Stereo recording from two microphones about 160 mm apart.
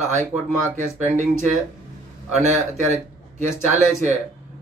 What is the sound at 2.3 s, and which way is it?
Speech, 45° right (ahead or behind).